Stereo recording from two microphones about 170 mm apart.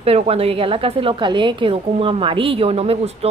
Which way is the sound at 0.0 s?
35° right (ahead or behind).